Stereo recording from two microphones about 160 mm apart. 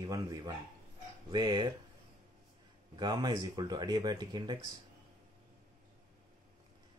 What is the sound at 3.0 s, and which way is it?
Speech, 25° right (ahead or behind).